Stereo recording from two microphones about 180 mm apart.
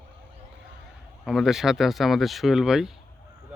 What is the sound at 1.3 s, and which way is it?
Speech, centre (ahead or behind).